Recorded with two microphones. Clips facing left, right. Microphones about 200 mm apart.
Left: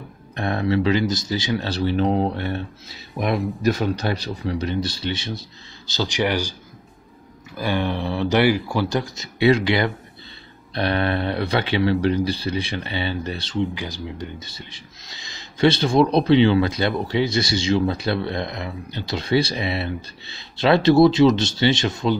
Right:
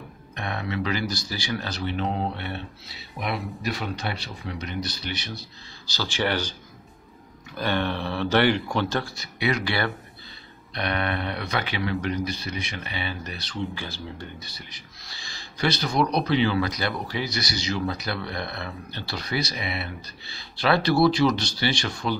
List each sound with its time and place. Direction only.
0.4 s speech: 35° left (ahead or behind); by 6.5 s 10° left (ahead or behind)
7.5 s speech: 10° left (ahead or behind)
10.7 s speech: 30° left (ahead or behind)
13.7 s speech: 15° left (ahead or behind)